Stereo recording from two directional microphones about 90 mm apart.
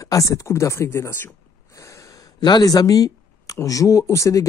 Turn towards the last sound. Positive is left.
turn(degrees=35)  # may be behind; listen again after turning